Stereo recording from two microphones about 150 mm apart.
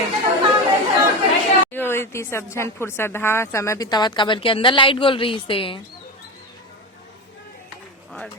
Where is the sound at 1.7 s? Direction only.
15° left (ahead or behind); by 5.8 s 35° left (ahead or behind).